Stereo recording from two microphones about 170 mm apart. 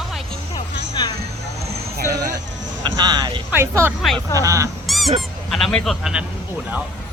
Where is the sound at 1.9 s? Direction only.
75° right (ahead or behind).